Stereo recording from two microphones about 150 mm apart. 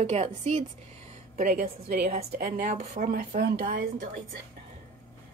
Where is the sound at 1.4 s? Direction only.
80° right.